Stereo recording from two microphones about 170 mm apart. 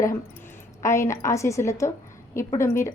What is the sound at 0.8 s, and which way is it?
A woman's voice, 15° left (ahead or behind).